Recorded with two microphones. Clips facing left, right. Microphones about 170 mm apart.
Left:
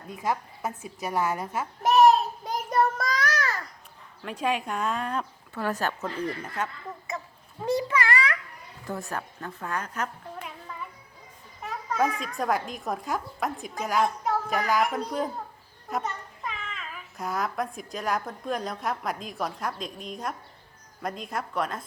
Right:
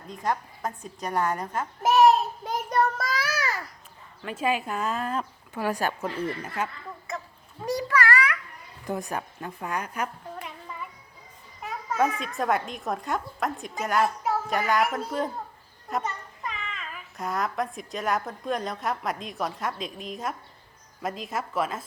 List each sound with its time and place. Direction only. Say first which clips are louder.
0.1 s a child's voice: even; 5° left (ahead or behind)
7.6 s a sound: even; 25° left (ahead or behind)
8.9 s a woman's voice: right 3 dB; 15° right (ahead or behind)
10.4 s music: even; 5° right (ahead or behind)
11.6 s a child's voice: right 1 dB; centre (ahead or behind)